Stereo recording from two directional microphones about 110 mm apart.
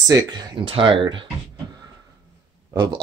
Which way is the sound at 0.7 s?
50° right (ahead or behind).